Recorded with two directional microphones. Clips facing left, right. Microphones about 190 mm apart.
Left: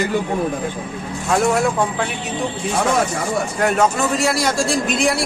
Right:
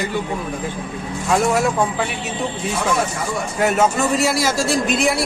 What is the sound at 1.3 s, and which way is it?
Speech, centre (ahead or behind).